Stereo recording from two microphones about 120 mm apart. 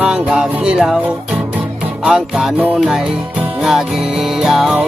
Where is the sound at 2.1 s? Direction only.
5° right (ahead or behind).